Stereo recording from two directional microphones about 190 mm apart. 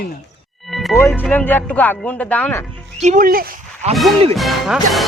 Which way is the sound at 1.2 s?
10° left (ahead or behind).